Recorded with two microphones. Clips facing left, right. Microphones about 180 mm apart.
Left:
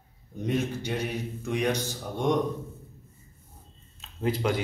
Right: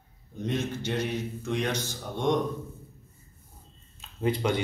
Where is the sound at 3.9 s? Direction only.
Centre (ahead or behind).